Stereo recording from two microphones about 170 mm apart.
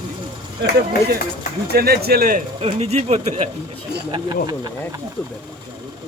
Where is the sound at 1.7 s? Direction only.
65° right (ahead or behind).